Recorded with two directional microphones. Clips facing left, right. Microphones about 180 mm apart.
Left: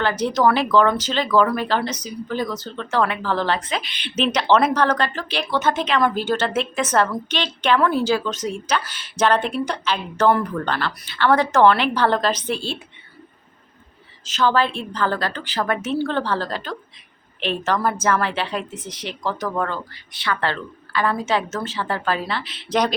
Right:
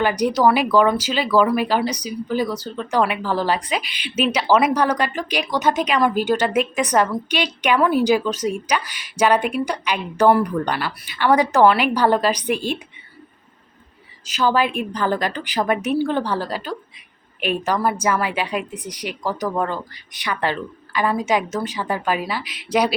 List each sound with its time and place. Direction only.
0.0 s speech: 15° right (ahead or behind)
14.3 s speech: 10° right (ahead or behind)